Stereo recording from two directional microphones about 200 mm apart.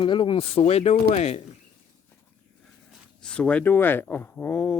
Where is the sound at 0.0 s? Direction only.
25° left (ahead or behind).